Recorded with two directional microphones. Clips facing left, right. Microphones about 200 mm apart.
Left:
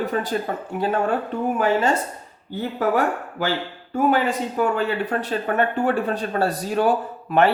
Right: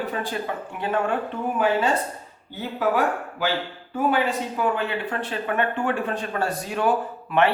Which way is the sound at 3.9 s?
45° left (ahead or behind).